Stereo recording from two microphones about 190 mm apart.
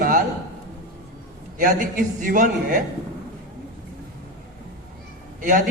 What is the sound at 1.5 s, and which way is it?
A man's voice, 45° right (ahead or behind).